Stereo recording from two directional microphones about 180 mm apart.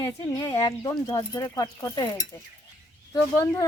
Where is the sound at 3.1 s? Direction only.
15° left (ahead or behind).